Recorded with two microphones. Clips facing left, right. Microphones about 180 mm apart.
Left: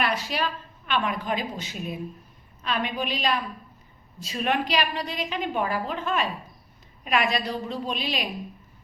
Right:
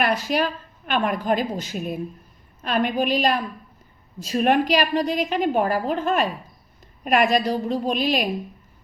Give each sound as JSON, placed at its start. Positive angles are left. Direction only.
{"t": 0.0, "sound": "a woman's voice", "side_deg": -45}